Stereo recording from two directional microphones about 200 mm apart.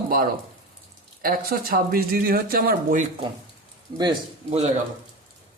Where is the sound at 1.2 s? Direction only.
45° right (ahead or behind).